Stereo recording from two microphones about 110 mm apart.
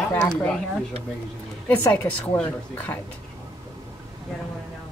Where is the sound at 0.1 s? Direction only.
15° left (ahead or behind).